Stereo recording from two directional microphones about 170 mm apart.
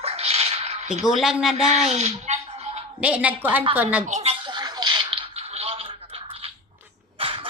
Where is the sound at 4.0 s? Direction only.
40° right (ahead or behind).